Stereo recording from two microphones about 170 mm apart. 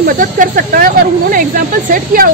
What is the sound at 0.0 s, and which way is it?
Speech, 55° right (ahead or behind).